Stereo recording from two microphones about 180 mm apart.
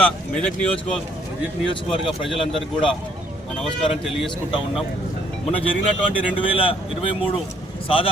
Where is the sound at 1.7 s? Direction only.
30° left (ahead or behind).